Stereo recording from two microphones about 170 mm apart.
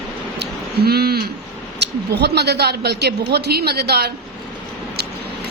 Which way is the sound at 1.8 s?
75° right (ahead or behind).